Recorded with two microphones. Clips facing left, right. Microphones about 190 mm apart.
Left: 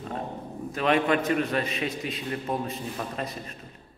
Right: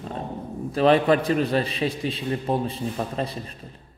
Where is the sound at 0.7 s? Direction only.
35° right (ahead or behind).